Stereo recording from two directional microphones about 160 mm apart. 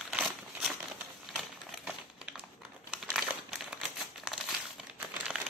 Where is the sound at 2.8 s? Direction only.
5° right (ahead or behind).